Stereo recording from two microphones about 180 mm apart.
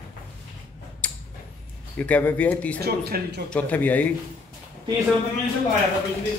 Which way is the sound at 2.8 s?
60° right (ahead or behind).